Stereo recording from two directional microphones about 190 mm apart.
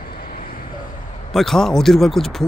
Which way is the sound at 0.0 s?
50° left (ahead or behind).